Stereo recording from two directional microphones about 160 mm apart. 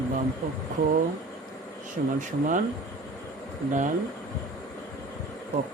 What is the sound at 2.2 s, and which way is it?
Speech, 55° right (ahead or behind).